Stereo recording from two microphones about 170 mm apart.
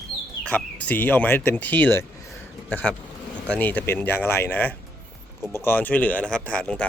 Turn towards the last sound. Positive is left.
turn(degrees=5)  # may be behind; listen again after turning